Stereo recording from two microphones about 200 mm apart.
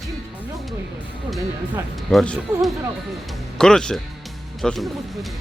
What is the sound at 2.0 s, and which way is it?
Speech, centre (ahead or behind).